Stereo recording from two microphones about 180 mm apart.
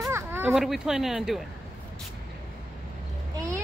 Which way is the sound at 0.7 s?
5° right (ahead or behind).